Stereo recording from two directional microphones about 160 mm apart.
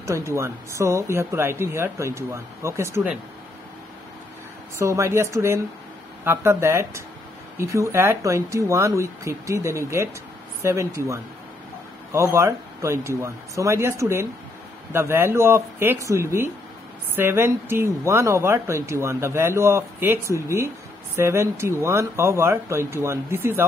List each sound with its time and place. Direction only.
0.0 s speech: 20° right (ahead or behind)
4.7 s speech: 20° right (ahead or behind)